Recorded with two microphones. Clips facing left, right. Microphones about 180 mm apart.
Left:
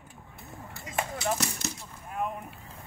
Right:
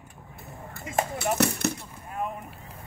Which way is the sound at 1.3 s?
60° right (ahead or behind).